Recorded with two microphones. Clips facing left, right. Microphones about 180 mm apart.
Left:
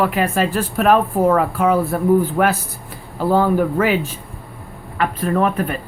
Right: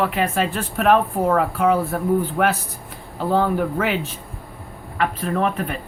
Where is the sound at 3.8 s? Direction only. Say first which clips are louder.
Left 5 dB; 40° left (ahead or behind).